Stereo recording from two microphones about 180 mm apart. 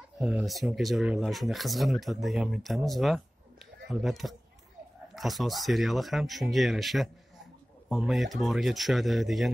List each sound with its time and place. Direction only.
0.2 s speech: 5° right (ahead or behind)